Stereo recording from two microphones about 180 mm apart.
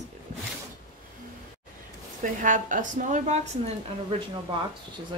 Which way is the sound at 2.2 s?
45° right (ahead or behind).